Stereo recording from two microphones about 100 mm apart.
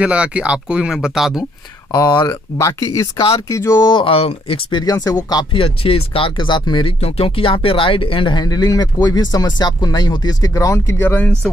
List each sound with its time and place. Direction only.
0.0 s speech: 10° right (ahead or behind)
1.9 s speech: 45° left (ahead or behind)
3.9 s speech: 65° left (ahead or behind)
4.6 s speech: 45° left (ahead or behind)
5.5 s speech: 65° left (ahead or behind); by 6.9 s 50° left (ahead or behind)
7.0 s speech: 80° left; by 11.2 s 25° left (ahead or behind)